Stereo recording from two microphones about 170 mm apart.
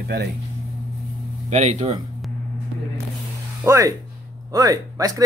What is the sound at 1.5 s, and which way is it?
Speech, 40° right (ahead or behind).